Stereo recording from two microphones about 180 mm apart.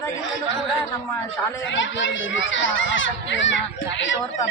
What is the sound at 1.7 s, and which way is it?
A child's voice, 90° left.